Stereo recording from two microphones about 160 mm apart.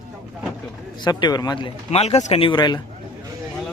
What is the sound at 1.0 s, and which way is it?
Speech, 25° left (ahead or behind).